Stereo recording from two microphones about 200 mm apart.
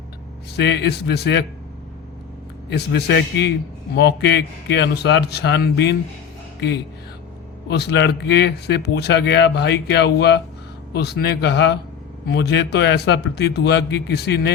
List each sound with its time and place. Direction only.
0.5 s speech: 55° left (ahead or behind)
2.6 s speech: 55° left (ahead or behind)
7.7 s speech: 55° left (ahead or behind)